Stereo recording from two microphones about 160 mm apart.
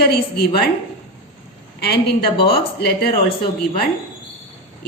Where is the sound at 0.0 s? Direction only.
85° left.